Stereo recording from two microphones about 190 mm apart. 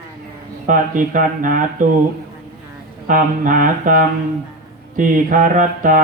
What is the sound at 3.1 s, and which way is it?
Mantra, 45° right (ahead or behind).